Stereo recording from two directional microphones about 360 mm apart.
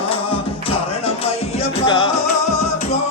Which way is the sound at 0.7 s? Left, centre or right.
Centre.